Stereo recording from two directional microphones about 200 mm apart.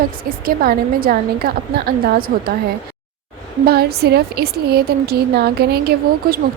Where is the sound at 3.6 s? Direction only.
50° right (ahead or behind).